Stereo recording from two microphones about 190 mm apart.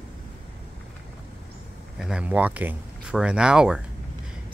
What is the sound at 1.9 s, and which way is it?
Speech, 5° right (ahead or behind).